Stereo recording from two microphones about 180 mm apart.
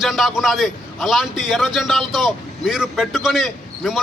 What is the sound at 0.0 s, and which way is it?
A man's voice, centre (ahead or behind).